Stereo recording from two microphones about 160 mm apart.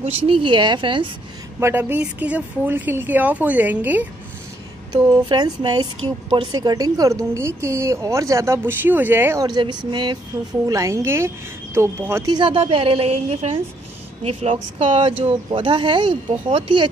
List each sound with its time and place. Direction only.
0.0 s speech: 30° right (ahead or behind)
1.6 s speech: 15° right (ahead or behind)
5.0 s speech: 25° right (ahead or behind)
12.4 s speech: 35° right (ahead or behind)